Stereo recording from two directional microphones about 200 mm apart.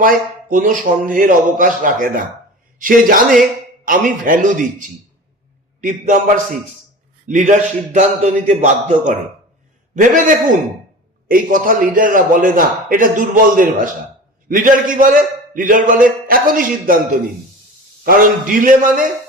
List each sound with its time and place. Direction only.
0.0 s a man's voice: 40° right (ahead or behind)
18.0 s a man's voice: 45° right (ahead or behind)